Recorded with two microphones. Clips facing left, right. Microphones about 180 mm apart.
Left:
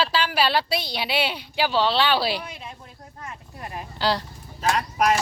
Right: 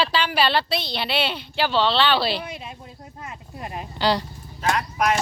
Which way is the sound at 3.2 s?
20° right (ahead or behind).